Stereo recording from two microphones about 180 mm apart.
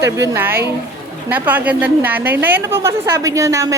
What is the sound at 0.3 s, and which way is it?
A woman's voice, 10° right (ahead or behind).